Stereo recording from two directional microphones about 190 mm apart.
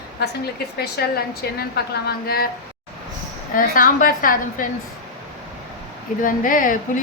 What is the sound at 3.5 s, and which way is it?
A woman's voice, 45° left (ahead or behind).